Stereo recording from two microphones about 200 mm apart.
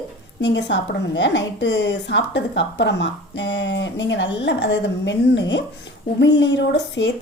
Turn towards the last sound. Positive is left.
turn(degrees=60)  # may be behind; listen again after turning